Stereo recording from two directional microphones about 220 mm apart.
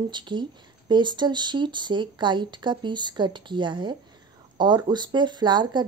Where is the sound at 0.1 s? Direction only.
20° right (ahead or behind).